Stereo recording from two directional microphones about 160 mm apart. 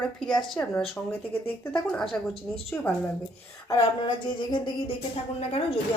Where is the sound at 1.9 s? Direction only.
5° left (ahead or behind).